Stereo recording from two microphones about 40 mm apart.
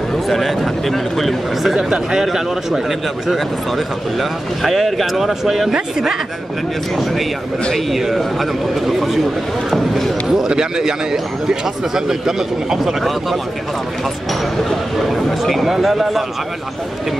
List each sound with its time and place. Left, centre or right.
0.3 s speech: centre
1.8 s speech: centre
3.3 s speech: centre
7.7 s speech: centre
9.7 s a sound: centre
10.3 s speech: centre
15.0 s speech: centre